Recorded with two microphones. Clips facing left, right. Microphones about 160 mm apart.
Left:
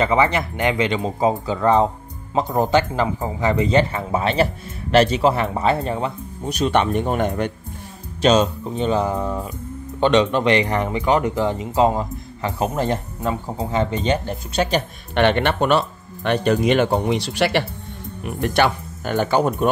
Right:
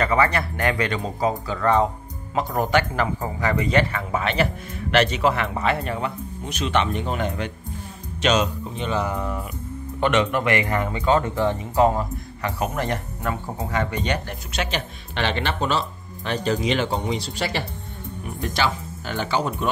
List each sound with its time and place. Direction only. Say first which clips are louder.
0.0 s speech: left 3 dB; 20° left (ahead or behind)
6.6 s speech: left 5 dB; 45° left (ahead or behind)
8.2 s speech: left 5 dB; 30° left (ahead or behind)
15.1 s speech: left 7 dB; 55° left (ahead or behind)